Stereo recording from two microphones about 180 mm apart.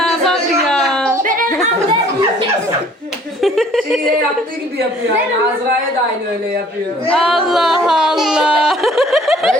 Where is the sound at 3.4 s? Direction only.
Centre (ahead or behind).